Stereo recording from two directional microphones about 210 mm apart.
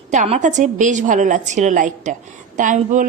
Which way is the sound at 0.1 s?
35° right (ahead or behind).